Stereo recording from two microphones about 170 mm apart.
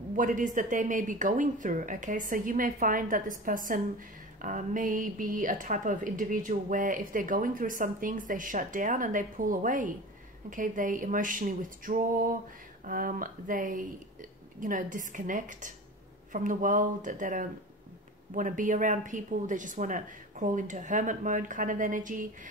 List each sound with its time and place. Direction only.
0.1 s a woman's voice: 50° right (ahead or behind)